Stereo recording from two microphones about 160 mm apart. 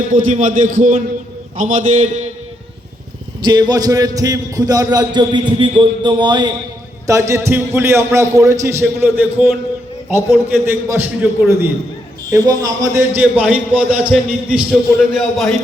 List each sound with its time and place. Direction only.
0.1 s a man's voice: 55° right (ahead or behind)
3.4 s a man's voice: 25° right (ahead or behind); by 15.5 s centre (ahead or behind)